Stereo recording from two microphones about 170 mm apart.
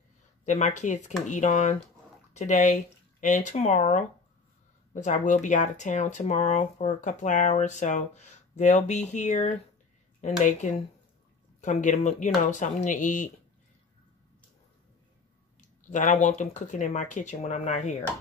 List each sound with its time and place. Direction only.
0.5 s speech: 45° left (ahead or behind)
15.9 s speech: 45° left (ahead or behind)